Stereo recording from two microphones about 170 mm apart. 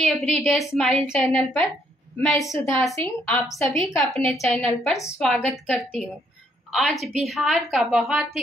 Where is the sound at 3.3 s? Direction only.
5° left (ahead or behind).